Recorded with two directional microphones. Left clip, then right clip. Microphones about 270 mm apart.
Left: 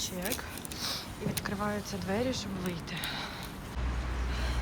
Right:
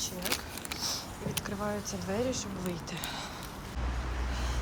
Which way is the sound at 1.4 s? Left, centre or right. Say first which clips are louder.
Left 2 dB; centre.